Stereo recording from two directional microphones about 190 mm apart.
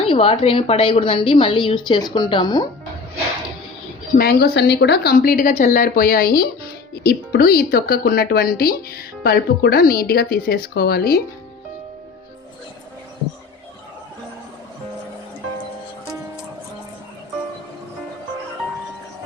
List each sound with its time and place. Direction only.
0.0 s a woman's voice: 30° left (ahead or behind)
4.2 s speech: 55° left (ahead or behind)